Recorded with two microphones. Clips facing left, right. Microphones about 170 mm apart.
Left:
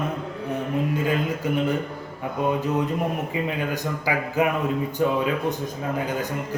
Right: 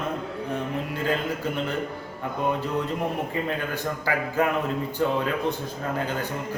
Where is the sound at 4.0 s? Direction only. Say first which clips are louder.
Left 2 dB; 15° left (ahead or behind).